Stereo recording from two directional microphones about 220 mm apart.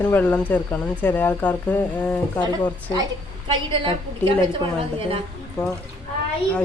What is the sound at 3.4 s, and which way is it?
Speech, 25° right (ahead or behind).